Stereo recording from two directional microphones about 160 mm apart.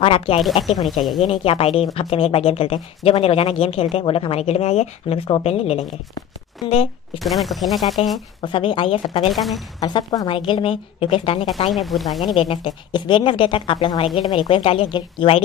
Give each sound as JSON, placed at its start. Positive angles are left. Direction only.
{"t": 0.0, "sound": "speech", "side_deg": 35}
{"t": 0.8, "sound": "speech", "side_deg": 0}
{"t": 1.2, "sound": "speech", "side_deg": 35}
{"t": 7.2, "sound": "speech", "side_deg": 0}
{"t": 8.4, "sound": "speech", "side_deg": 30}
{"t": 9.3, "sound": "speech", "side_deg": 0}
{"t": 9.8, "sound": "speech", "side_deg": 25}
{"t": 11.7, "sound": "speech", "side_deg": 0}
{"t": 12.4, "sound": "speech", "side_deg": 35}